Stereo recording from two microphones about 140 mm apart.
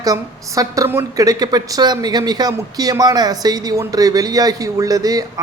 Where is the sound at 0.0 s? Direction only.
25° right (ahead or behind).